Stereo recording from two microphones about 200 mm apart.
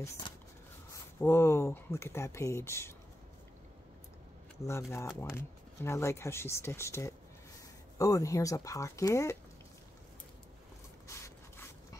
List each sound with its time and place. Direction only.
1.2 s speech: 15° left (ahead or behind)
4.6 s speech: 15° left (ahead or behind)
11.1 s dog: 15° left (ahead or behind)